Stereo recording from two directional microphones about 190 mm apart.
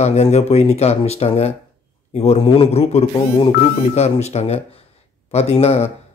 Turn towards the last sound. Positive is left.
turn(degrees=35)  # may be behind; listen again after turning